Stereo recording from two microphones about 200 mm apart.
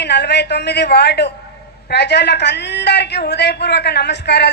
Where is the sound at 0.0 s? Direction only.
55° left (ahead or behind).